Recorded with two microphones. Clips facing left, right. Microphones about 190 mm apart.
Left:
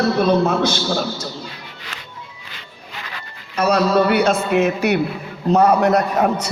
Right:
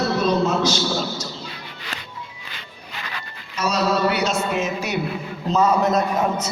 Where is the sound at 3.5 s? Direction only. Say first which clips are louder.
Left 6 dB; 60° left (ahead or behind).